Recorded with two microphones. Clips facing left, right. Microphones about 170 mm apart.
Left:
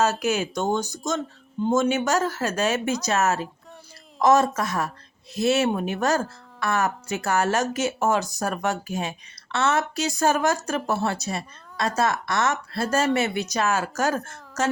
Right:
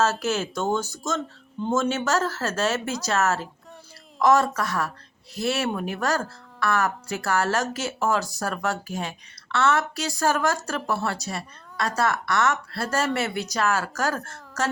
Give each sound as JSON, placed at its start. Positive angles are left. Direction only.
{"t": 0.0, "sound": "speech", "side_deg": 15}